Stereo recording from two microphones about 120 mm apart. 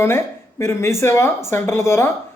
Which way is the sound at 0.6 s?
20° left (ahead or behind).